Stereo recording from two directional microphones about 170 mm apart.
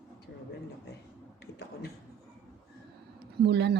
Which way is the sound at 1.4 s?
75° left (ahead or behind).